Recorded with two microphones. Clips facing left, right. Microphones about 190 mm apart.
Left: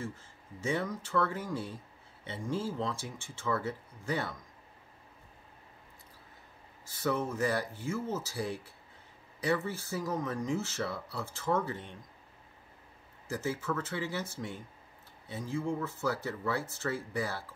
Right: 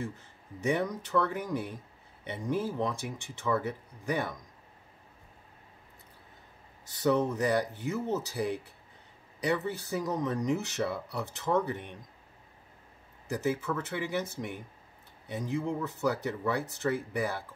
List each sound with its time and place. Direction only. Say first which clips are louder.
0.0 s speech: right 3 dB; 15° right (ahead or behind)
6.9 s speech: right 5 dB; 20° right (ahead or behind)
13.7 s speech: right 1 dB; 15° right (ahead or behind)
15.2 s speech: right 2 dB; 20° right (ahead or behind)